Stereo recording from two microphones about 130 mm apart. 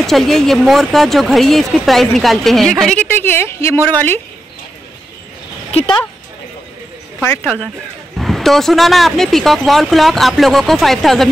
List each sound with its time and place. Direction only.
0.0 s speech: centre (ahead or behind)
2.9 s a woman's voice: 10° left (ahead or behind)
5.7 s speech: 50° left (ahead or behind)
7.2 s a woman's voice: 10° left (ahead or behind)
8.2 s speech: centre (ahead or behind)